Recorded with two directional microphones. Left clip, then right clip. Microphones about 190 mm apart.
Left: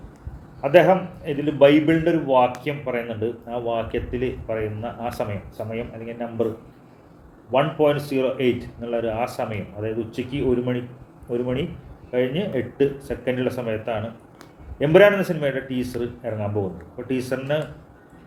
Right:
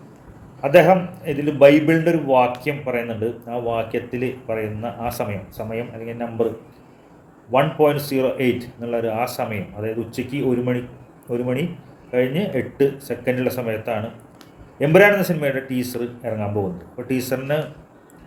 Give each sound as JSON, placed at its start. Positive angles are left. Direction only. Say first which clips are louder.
{"t": 0.6, "sound": "speech", "louder": "right 2 dB", "side_deg": -20}
{"t": 7.5, "sound": "speech", "louder": "right 2 dB", "side_deg": -20}